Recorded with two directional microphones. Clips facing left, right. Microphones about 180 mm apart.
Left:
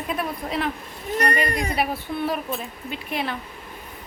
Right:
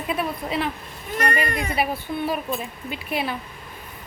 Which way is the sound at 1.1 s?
35° left (ahead or behind).